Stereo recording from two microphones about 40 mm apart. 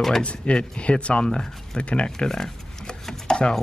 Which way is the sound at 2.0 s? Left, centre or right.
Centre.